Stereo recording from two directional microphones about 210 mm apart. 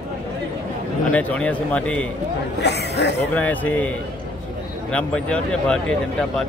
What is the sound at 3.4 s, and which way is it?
A man's voice, 10° left (ahead or behind).